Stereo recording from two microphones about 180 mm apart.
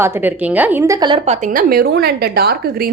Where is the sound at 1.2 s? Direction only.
40° right (ahead or behind); by 2.9 s 60° right (ahead or behind).